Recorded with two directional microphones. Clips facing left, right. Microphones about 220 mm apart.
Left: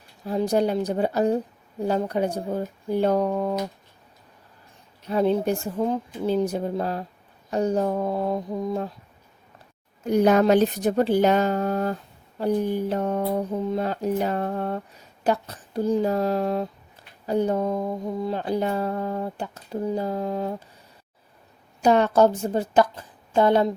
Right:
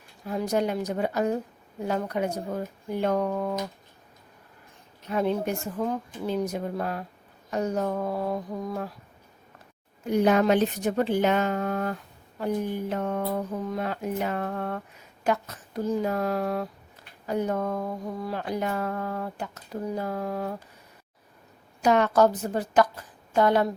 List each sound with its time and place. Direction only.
0.3 s speech: 30° left (ahead or behind)
5.0 s speech: 30° left (ahead or behind)
10.1 s speech: 40° left (ahead or behind); by 20.6 s 25° left (ahead or behind)
21.8 s a woman's voice: 30° left (ahead or behind)